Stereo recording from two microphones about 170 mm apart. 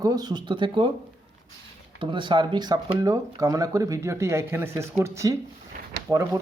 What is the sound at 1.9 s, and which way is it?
Speech, 30° right (ahead or behind).